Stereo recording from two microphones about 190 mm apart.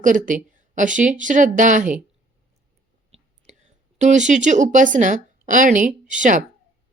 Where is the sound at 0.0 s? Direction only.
45° right (ahead or behind).